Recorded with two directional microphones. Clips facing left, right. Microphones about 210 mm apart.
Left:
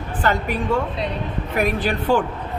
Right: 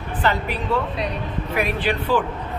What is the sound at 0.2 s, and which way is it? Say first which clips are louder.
Speech: left 1 dB; 50° left (ahead or behind).